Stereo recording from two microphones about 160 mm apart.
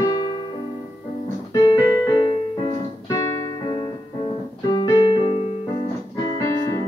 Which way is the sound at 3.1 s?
25° left (ahead or behind).